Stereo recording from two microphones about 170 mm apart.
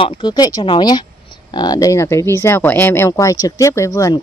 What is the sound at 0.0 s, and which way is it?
Speech, 30° left (ahead or behind).